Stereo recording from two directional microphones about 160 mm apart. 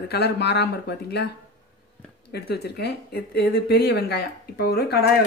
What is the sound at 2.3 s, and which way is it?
Speech, 90° left.